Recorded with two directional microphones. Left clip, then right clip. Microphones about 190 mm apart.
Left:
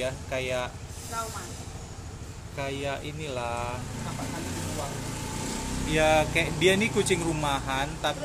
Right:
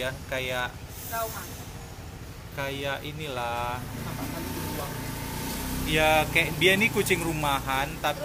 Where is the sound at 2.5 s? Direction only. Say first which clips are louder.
Right 1 dB; 5° left (ahead or behind).